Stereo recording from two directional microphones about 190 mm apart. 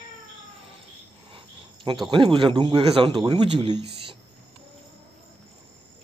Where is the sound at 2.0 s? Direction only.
25° right (ahead or behind).